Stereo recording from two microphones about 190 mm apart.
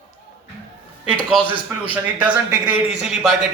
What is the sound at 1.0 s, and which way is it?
A man's voice, 5° right (ahead or behind).